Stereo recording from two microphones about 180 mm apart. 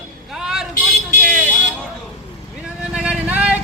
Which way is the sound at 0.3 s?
5° right (ahead or behind).